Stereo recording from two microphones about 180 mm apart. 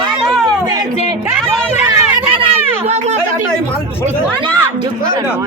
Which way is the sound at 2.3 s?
30° right (ahead or behind).